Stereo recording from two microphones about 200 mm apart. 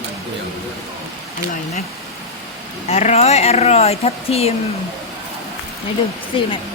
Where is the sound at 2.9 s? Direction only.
35° left (ahead or behind).